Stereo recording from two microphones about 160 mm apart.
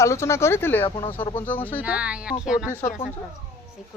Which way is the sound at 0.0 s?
15° left (ahead or behind).